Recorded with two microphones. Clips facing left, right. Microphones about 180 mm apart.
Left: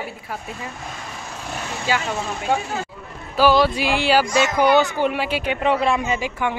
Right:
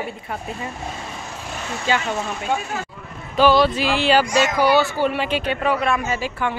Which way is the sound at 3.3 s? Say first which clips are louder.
Right 1 dB; 10° left (ahead or behind).